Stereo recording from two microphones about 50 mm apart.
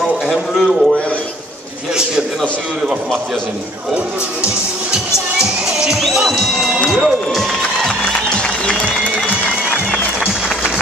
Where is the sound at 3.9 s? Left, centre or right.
Right; by 6.5 s centre.